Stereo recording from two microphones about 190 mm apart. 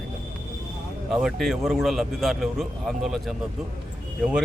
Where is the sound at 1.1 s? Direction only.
Centre (ahead or behind).